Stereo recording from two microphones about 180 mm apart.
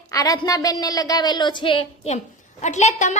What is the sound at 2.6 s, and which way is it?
Speech, 40° left (ahead or behind).